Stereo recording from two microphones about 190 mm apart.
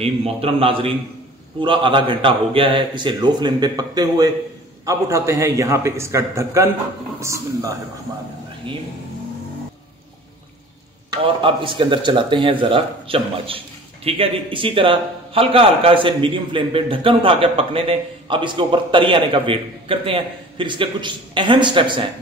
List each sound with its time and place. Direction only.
0.0 s a man's voice: 30° right (ahead or behind); by 7.7 s 15° right (ahead or behind)
11.2 s a man's voice: 25° right (ahead or behind)